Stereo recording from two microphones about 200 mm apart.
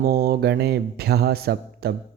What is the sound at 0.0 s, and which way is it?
A man's voice, 50° right (ahead or behind).